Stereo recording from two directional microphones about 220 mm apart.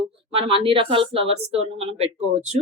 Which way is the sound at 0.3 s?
25° right (ahead or behind).